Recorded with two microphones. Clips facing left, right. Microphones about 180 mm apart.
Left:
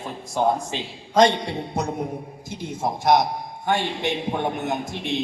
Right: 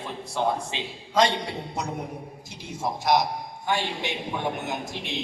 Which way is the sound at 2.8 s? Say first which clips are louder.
Left 4 dB; 50° left (ahead or behind).